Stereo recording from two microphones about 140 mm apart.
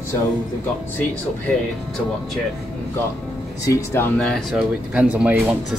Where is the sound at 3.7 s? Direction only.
20° left (ahead or behind).